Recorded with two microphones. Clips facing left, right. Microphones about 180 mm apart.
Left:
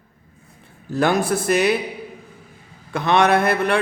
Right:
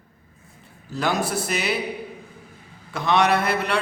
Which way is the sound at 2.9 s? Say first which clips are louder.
Left 3 dB; 55° left (ahead or behind).